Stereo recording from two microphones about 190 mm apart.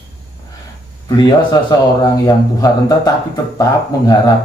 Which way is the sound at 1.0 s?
20° left (ahead or behind).